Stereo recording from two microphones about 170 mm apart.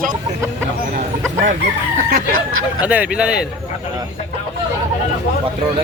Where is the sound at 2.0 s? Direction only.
45° right (ahead or behind).